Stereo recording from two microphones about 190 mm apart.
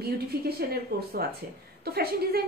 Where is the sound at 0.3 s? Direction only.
55° right (ahead or behind).